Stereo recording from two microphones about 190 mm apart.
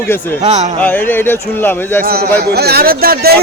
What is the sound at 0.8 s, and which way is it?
A man's voice, 10° left (ahead or behind).